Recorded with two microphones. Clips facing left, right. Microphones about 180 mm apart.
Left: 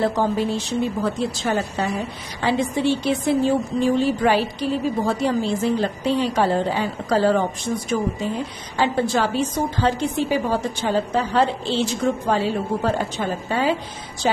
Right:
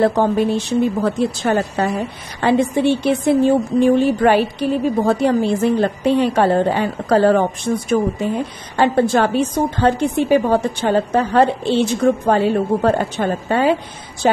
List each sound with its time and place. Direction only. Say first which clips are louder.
0.0 s a woman's voice: right 5 dB; 60° right (ahead or behind)